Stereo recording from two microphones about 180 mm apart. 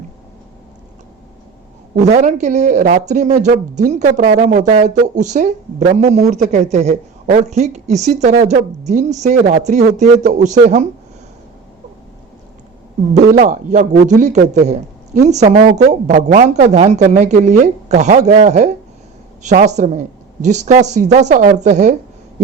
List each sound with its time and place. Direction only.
2.0 s a woman's voice: 40° right (ahead or behind)
4.2 s speech: 60° right (ahead or behind)
4.4 s a woman's voice: 40° right (ahead or behind)
13.4 s a man's voice: 40° right (ahead or behind)